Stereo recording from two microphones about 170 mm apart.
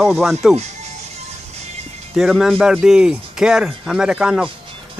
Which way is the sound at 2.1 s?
Centre (ahead or behind).